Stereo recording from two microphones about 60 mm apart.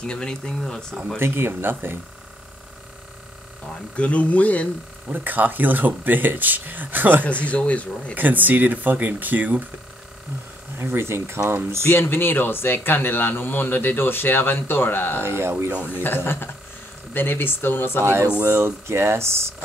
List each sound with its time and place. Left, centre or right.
0.0 s speech: centre
1.2 s speech: right
3.9 s speech: left
5.0 s speech: right
7.4 s speech: left
8.1 s speech: right
10.8 s speech: right
11.9 s a man's voice: left
15.2 s speech: right
15.9 s a man's voice: left
18.0 s speech: right